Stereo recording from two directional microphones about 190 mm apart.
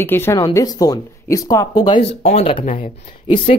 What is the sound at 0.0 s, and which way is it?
Speech, 10° left (ahead or behind).